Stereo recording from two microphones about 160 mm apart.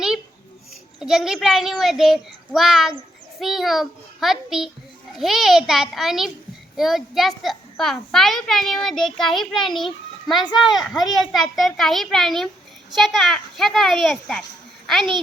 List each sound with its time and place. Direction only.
0.9 s a child's voice: 5° right (ahead or behind)
10.6 s a child's voice: centre (ahead or behind)
10.9 s a child's voice: 25° left (ahead or behind)
11.3 s a child's voice: centre (ahead or behind)